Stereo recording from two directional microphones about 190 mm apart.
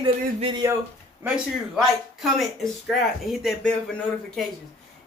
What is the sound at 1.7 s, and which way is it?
Speech, centre (ahead or behind).